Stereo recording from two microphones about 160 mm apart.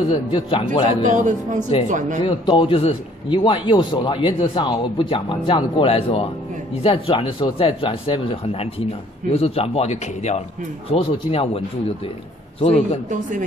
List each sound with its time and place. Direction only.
0.1 s a man's voice: 35° left (ahead or behind)
1.0 s speech: 50° right (ahead or behind)
2.2 s a man's voice: 30° left (ahead or behind)